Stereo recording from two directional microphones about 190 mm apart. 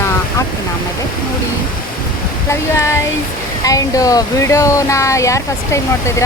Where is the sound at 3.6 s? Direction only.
20° left (ahead or behind).